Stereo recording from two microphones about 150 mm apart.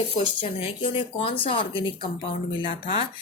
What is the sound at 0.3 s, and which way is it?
Speech, 40° left (ahead or behind).